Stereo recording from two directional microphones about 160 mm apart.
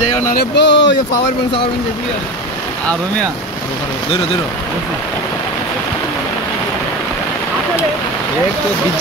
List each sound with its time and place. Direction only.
0.3 s speech: 80° left